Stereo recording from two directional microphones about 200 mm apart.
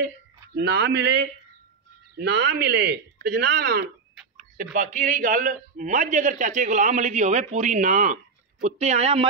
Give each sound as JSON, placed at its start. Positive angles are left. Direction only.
{"t": 0.6, "sound": "speech", "side_deg": -55}
{"t": 2.2, "sound": "speech", "side_deg": -60}
{"t": 4.7, "sound": "a man's voice", "side_deg": -40}